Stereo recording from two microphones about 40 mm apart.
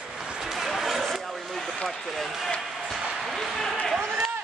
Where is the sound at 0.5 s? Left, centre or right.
Centre.